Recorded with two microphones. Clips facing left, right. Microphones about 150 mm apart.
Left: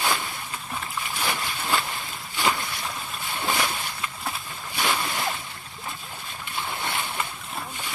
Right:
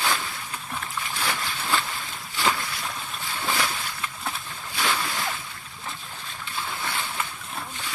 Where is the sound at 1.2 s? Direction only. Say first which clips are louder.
Left 1 dB; 10° left (ahead or behind).